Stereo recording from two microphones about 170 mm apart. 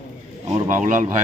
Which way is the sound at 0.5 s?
50° right (ahead or behind).